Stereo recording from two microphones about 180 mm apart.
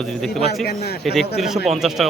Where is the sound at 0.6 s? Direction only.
65° left (ahead or behind).